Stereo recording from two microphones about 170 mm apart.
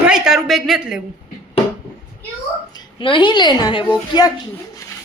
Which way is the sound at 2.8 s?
30° left (ahead or behind).